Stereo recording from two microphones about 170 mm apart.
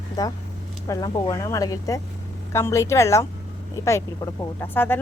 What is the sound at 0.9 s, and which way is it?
Speech, 25° left (ahead or behind).